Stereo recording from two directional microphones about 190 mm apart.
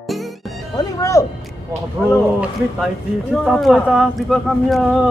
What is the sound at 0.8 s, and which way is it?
Music, 15° left (ahead or behind).